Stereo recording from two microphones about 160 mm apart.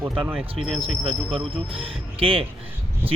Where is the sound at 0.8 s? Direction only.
35° right (ahead or behind).